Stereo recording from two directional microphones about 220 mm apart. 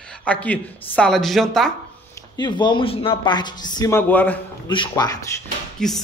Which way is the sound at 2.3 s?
20° left (ahead or behind).